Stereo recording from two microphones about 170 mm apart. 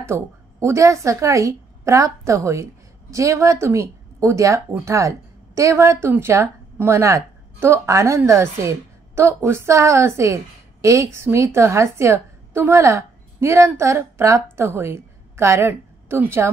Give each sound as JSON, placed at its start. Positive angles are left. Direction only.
{"t": 0.0, "sound": "a woman's voice", "side_deg": -15}